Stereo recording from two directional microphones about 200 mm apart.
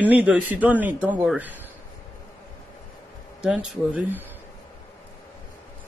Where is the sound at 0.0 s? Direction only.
10° right (ahead or behind).